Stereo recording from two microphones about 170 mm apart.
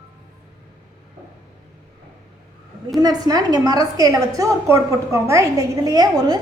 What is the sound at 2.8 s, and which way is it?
A woman's voice, 25° right (ahead or behind).